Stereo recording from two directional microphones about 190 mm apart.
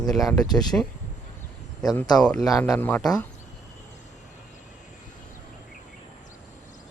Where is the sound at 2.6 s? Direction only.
10° left (ahead or behind).